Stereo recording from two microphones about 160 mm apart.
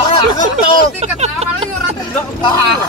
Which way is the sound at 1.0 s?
40° right (ahead or behind).